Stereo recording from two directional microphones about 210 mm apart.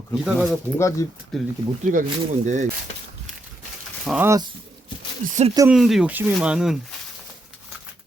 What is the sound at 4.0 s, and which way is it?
Speech, centre (ahead or behind).